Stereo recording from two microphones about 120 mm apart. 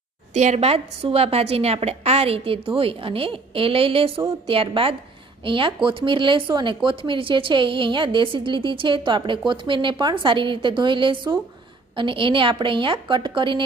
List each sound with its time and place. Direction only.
0.3 s a woman's voice: 70° right (ahead or behind); by 13.7 s 45° right (ahead or behind)